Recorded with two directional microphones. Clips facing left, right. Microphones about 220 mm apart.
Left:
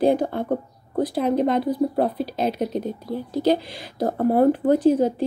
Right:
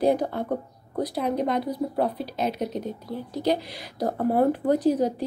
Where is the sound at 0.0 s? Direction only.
25° left (ahead or behind).